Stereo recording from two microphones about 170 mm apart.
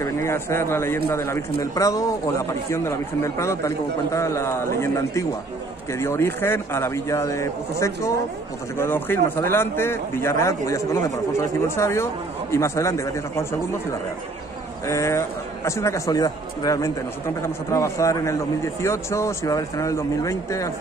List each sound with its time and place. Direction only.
0.0 s speech: 15° left (ahead or behind)
14.9 s speech: 15° left (ahead or behind)